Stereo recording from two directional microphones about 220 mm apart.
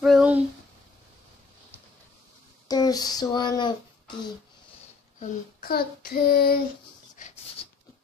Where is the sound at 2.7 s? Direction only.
15° left (ahead or behind).